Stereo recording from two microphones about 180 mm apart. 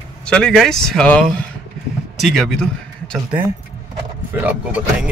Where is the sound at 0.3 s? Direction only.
5° left (ahead or behind).